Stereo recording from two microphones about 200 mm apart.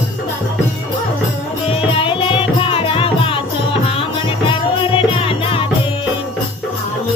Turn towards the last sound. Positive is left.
turn(degrees=25)  # may be behind; listen again after turning